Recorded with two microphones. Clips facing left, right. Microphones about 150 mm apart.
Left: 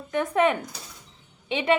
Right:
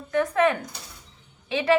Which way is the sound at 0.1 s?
20° left (ahead or behind).